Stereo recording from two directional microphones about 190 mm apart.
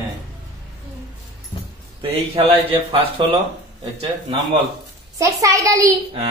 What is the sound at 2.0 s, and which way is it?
Speech, 30° right (ahead or behind).